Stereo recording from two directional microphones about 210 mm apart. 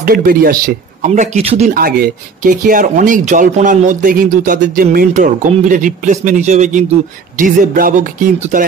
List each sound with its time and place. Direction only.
0.0 s speech: 45° right (ahead or behind)
1.7 s speech: 45° right (ahead or behind)